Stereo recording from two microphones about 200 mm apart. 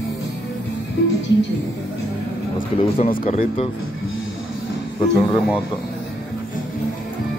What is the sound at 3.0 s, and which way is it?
Speech, 40° left (ahead or behind).